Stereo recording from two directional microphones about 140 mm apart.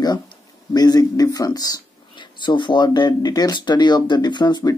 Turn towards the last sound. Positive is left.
turn(degrees=30)  # may be behind; listen again after turning